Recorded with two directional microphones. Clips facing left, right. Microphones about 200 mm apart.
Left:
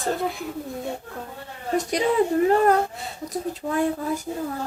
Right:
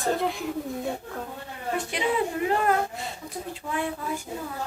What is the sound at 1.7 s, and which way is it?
Speech, 40° left (ahead or behind).